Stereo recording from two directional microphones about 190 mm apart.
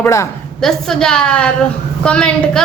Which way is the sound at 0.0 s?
15° left (ahead or behind).